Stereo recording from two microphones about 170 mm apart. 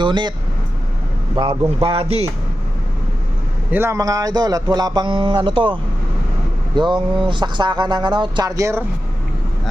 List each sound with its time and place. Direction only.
0.0 s speech: 25° right (ahead or behind)
1.4 s speech: 30° right (ahead or behind)
3.7 s speech: 15° right (ahead or behind)